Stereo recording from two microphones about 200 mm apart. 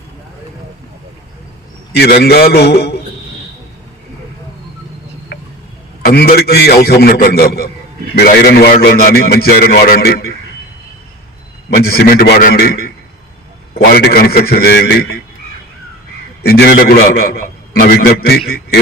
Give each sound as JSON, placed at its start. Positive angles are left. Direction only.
{"t": 2.0, "sound": "a man's voice", "side_deg": 55}
{"t": 5.3, "sound": "a sound", "side_deg": 60}
{"t": 6.1, "sound": "a man's voice", "side_deg": 50}
{"t": 11.7, "sound": "a man's voice", "side_deg": 50}
{"t": 16.4, "sound": "a man's voice", "side_deg": 50}